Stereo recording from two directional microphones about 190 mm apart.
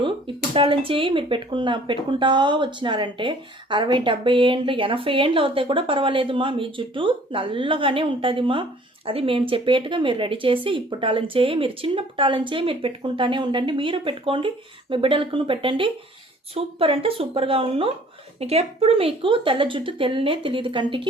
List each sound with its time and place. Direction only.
0.0 s speech: 25° right (ahead or behind)